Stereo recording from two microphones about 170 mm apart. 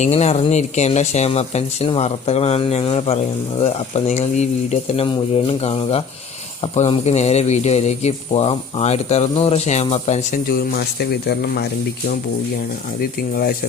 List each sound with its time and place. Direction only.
0.0 s a man's voice: 40° left (ahead or behind)
10.5 s speech: 65° left (ahead or behind)